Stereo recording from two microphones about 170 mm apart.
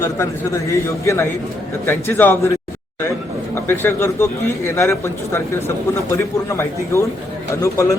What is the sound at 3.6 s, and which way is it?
A man's voice, 15° left (ahead or behind).